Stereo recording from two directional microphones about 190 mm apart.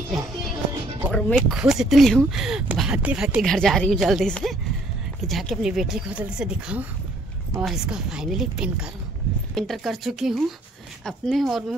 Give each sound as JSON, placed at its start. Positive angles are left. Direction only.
{"t": 1.1, "sound": "speech", "side_deg": -5}